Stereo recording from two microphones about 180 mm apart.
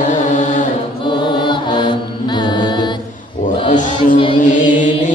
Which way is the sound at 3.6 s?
45° left (ahead or behind).